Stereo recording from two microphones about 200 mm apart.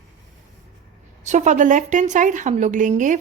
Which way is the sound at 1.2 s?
35° right (ahead or behind).